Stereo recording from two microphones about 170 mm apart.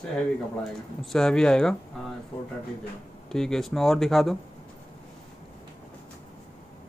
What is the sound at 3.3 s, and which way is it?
Speech, 5° left (ahead or behind).